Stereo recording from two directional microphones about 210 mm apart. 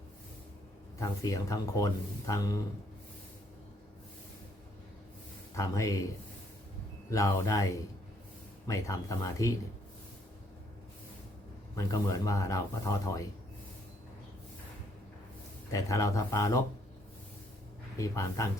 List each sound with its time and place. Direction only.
0.9 s speech: 15° left (ahead or behind)
5.5 s speech: 15° left (ahead or behind)
7.1 s speech: 15° left (ahead or behind)
11.8 s speech: 15° left (ahead or behind)
15.7 s speech: 15° left (ahead or behind)
17.9 s speech: 15° left (ahead or behind)